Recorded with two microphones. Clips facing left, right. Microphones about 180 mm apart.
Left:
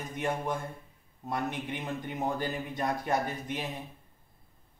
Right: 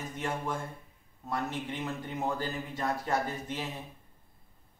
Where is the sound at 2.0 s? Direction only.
15° left (ahead or behind).